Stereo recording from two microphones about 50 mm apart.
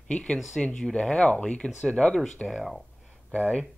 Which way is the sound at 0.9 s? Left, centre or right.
Centre.